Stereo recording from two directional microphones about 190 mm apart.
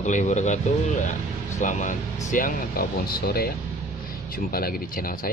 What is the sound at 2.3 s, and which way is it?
Speech, 45° left (ahead or behind).